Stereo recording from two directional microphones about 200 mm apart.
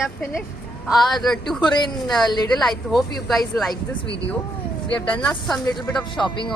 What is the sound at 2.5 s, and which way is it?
Speech, centre (ahead or behind).